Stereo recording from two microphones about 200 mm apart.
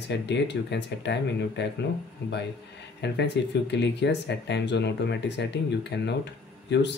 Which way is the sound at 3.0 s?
60° left (ahead or behind).